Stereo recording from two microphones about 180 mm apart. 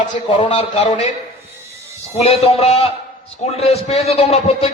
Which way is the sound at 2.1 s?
35° left (ahead or behind).